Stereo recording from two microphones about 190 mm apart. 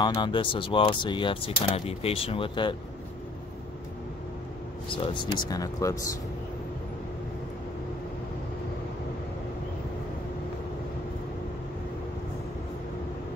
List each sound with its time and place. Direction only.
0.0 s speech: 25° left (ahead or behind)
4.9 s speech: 25° left (ahead or behind)